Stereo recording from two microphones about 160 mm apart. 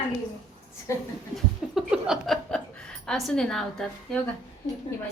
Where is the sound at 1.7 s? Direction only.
5° right (ahead or behind).